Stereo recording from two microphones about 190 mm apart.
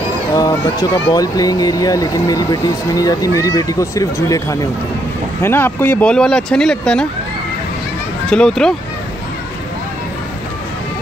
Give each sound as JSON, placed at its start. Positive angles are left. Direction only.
{"t": 0.3, "sound": "speech", "side_deg": 20}
{"t": 8.3, "sound": "speech", "side_deg": 5}